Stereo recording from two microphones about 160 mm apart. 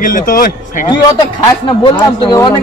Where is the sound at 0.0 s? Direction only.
60° left (ahead or behind).